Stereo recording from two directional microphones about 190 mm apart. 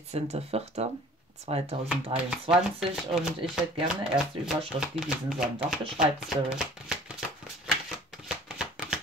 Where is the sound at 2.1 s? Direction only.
5° right (ahead or behind).